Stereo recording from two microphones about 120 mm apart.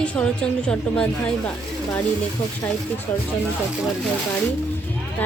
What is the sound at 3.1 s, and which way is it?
Speech, 15° left (ahead or behind).